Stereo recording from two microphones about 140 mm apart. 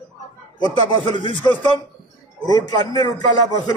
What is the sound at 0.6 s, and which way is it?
A man's voice, 35° left (ahead or behind).